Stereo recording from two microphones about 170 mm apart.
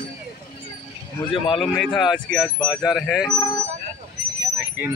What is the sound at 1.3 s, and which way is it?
Speech, 30° left (ahead or behind).